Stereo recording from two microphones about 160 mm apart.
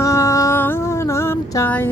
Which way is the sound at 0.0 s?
20° left (ahead or behind).